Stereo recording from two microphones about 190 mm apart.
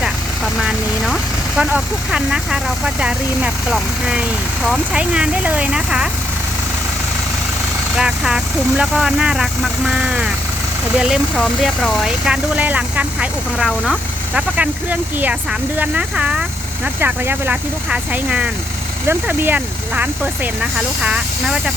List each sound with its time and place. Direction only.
0.6 s speech: centre (ahead or behind)
7.9 s speech: 5° right (ahead or behind)